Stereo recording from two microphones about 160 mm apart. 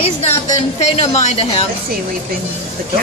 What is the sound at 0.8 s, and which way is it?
Speech, 45° left (ahead or behind).